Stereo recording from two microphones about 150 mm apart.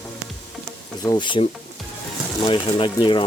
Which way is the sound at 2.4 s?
35° left (ahead or behind).